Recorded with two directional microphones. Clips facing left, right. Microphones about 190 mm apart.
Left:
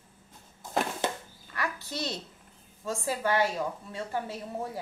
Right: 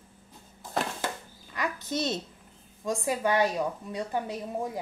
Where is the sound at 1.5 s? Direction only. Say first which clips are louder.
Right 4 dB; 20° right (ahead or behind).